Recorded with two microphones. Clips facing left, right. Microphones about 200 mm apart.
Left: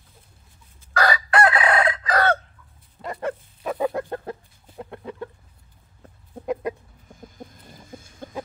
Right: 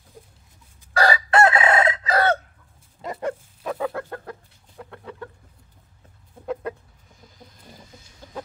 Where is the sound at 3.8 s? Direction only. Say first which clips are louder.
Left 6 dB; 20° left (ahead or behind).